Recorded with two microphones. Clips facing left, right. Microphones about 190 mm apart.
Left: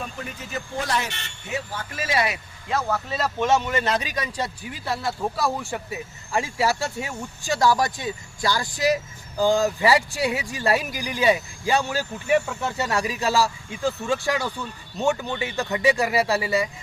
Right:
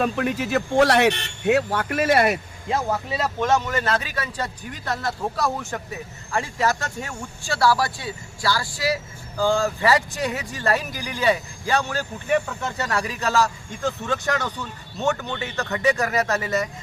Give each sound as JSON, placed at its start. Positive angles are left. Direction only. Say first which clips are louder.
{"t": 0.0, "sound": "speech", "louder": "right 12 dB", "side_deg": -75}
{"t": 2.6, "sound": "speech", "louder": "right 1 dB", "side_deg": -20}
{"t": 3.4, "sound": "speech", "louder": "left 1 dB", "side_deg": 10}